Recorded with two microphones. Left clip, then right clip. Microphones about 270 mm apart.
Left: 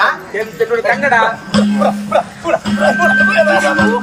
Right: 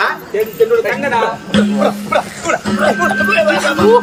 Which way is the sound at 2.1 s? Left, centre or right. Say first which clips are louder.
Left 1 dB; centre.